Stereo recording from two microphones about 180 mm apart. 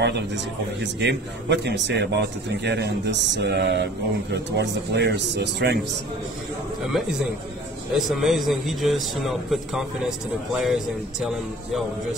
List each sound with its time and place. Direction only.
0.0 s a man's voice: 70° right (ahead or behind)
6.9 s a man's voice: 5° right (ahead or behind)